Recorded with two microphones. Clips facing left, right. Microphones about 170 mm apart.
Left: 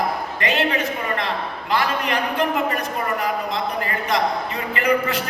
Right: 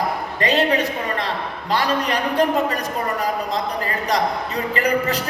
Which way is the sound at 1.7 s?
35° right (ahead or behind).